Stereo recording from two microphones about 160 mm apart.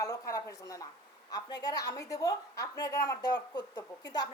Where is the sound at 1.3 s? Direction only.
25° left (ahead or behind).